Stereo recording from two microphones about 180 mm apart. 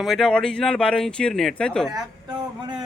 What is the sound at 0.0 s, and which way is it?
Speech, centre (ahead or behind).